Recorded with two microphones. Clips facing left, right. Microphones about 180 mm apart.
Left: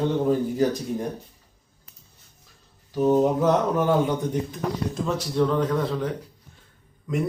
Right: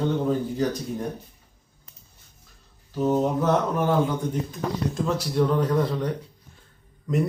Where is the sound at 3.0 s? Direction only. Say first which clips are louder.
Left 3 dB; 15° left (ahead or behind).